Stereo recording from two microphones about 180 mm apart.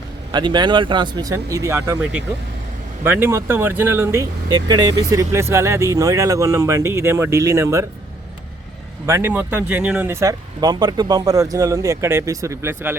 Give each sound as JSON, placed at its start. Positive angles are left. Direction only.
{"t": 0.3, "sound": "speech", "side_deg": -25}
{"t": 9.0, "sound": "speech", "side_deg": -15}